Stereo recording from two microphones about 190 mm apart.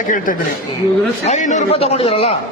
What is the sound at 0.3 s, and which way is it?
A man's voice, 45° left (ahead or behind).